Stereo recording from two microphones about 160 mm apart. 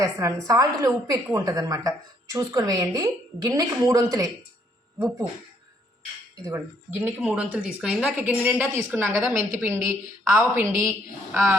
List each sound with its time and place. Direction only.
0.0 s a woman's voice: 20° right (ahead or behind)
7.0 s a woman's voice: 5° right (ahead or behind)